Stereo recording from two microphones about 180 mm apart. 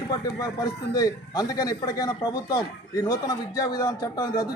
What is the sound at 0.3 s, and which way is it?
A man's voice, 20° left (ahead or behind).